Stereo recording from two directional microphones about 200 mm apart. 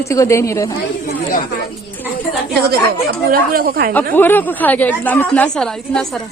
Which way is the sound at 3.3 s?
45° right (ahead or behind).